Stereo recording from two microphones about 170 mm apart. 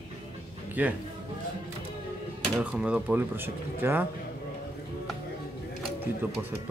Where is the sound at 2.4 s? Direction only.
5° right (ahead or behind).